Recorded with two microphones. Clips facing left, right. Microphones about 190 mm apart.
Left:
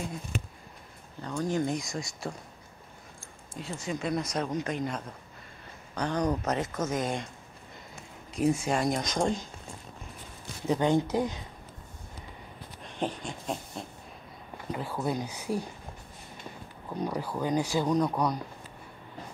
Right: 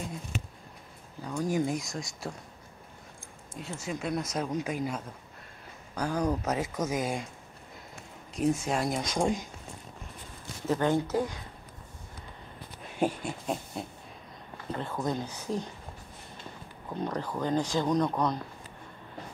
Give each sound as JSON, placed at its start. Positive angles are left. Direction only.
{"t": 1.2, "sound": "speech", "side_deg": -10}
{"t": 3.5, "sound": "speech", "side_deg": -5}
{"t": 8.4, "sound": "speech", "side_deg": 0}
{"t": 10.7, "sound": "speech", "side_deg": 15}
{"t": 12.8, "sound": "a sound", "side_deg": -10}
{"t": 14.7, "sound": "speech", "side_deg": 5}
{"t": 17.0, "sound": "speech", "side_deg": 10}